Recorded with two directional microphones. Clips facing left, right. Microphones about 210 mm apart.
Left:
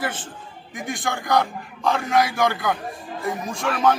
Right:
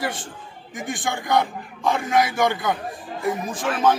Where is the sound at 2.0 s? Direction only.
Centre (ahead or behind).